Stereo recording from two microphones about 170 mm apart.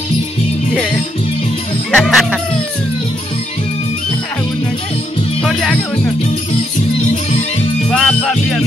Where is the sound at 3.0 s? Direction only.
40° left (ahead or behind).